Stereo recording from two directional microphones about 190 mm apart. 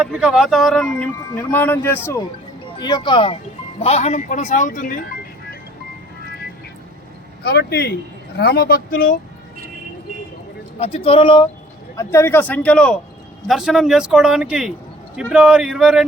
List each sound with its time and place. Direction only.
0.0 s a man's voice: 5° right (ahead or behind); by 2.2 s 10° left (ahead or behind)
2.7 s speech: 25° left (ahead or behind); by 4.9 s 45° left (ahead or behind)
7.4 s speech: 60° left (ahead or behind)
10.8 s speech: 30° left (ahead or behind)
11.9 s a man's voice: 15° left (ahead or behind); by 16.0 s 5° right (ahead or behind)